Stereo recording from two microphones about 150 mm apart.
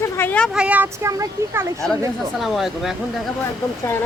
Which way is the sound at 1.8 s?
5° left (ahead or behind).